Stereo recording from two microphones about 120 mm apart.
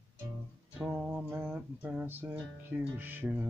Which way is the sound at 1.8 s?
15° right (ahead or behind).